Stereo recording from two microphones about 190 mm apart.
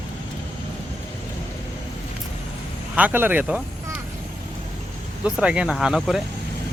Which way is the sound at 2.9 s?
10° right (ahead or behind).